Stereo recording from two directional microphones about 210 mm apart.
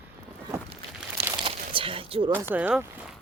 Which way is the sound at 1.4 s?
25° right (ahead or behind).